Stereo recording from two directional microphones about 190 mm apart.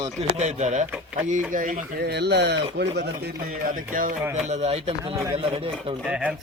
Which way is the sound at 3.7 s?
45° right (ahead or behind).